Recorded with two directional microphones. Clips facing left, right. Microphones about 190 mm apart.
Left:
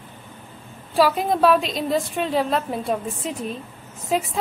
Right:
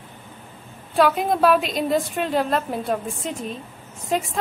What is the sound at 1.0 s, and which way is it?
A woman's voice, centre (ahead or behind).